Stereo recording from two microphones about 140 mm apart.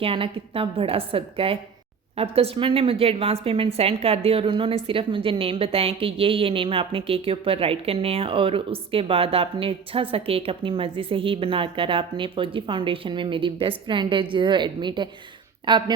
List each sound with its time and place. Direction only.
0.0 s a woman's voice: 40° right (ahead or behind)